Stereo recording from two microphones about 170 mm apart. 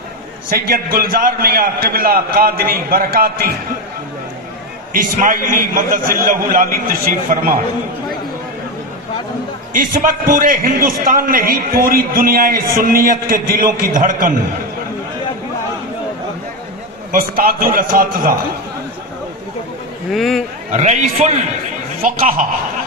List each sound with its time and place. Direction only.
0.5 s a man's voice: 60° right (ahead or behind)
4.9 s a man's voice: 55° right (ahead or behind)
9.7 s a man's voice: 55° right (ahead or behind)
17.1 s a man's voice: 55° right (ahead or behind)
20.1 s speech: centre (ahead or behind)
20.7 s a man's voice: 45° right (ahead or behind)